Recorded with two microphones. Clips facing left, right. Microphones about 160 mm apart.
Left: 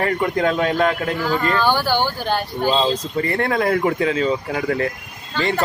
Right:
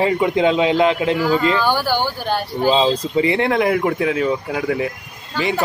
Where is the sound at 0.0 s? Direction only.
10° right (ahead or behind).